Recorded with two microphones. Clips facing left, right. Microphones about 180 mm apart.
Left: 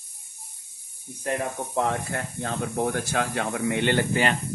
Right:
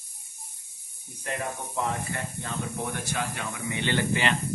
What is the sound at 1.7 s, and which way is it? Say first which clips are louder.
Speech: left 5 dB; 75° left (ahead or behind).